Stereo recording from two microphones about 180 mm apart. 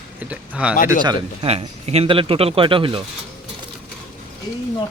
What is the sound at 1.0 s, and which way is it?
A man's voice, 30° right (ahead or behind).